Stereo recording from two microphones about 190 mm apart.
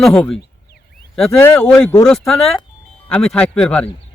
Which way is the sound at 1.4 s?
5° left (ahead or behind).